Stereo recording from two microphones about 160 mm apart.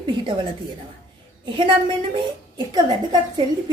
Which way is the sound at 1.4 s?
30° right (ahead or behind).